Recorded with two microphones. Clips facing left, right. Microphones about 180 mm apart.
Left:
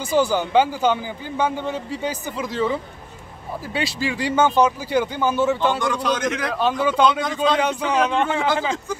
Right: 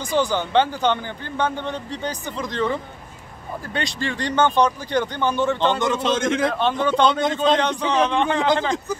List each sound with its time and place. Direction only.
0.0 s a man's voice: 10° left (ahead or behind)
5.8 s a man's voice: 25° right (ahead or behind)
6.5 s a man's voice: 5° left (ahead or behind)